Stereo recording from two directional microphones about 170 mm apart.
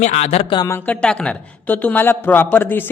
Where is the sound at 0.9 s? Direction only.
5° left (ahead or behind).